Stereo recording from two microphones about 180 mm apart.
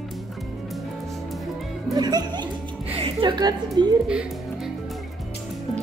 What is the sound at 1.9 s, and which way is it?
Music, 20° right (ahead or behind).